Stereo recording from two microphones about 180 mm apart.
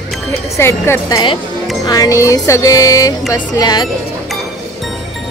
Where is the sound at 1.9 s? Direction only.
20° left (ahead or behind).